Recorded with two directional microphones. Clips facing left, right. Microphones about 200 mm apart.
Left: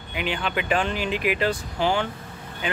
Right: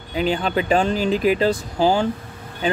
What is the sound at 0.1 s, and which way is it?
Speech, 35° right (ahead or behind).